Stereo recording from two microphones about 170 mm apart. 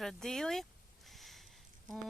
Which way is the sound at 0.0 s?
Centre (ahead or behind).